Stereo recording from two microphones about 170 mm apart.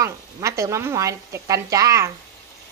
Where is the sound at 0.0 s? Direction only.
15° right (ahead or behind).